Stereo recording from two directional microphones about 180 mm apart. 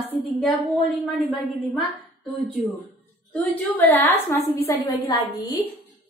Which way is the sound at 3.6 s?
10° left (ahead or behind).